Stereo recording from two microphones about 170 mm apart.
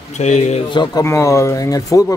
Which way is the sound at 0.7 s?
25° left (ahead or behind).